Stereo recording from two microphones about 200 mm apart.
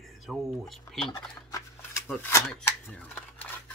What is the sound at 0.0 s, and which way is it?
Speech, centre (ahead or behind).